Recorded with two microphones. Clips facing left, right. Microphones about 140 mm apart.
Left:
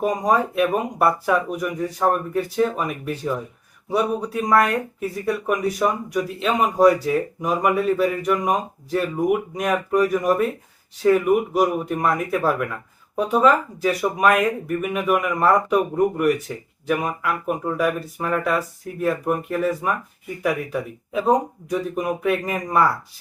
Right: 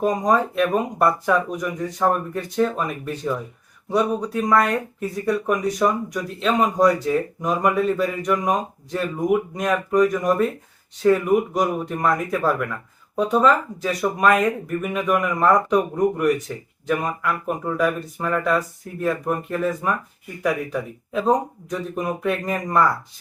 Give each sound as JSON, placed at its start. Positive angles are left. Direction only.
{"t": 0.0, "sound": "speech", "side_deg": 10}